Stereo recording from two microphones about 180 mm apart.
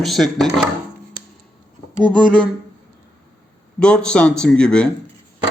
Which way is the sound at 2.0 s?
25° right (ahead or behind).